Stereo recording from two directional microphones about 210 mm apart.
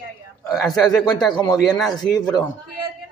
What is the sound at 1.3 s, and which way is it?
Speech, 20° left (ahead or behind).